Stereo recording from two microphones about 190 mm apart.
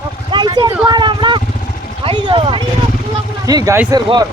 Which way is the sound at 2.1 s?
25° right (ahead or behind).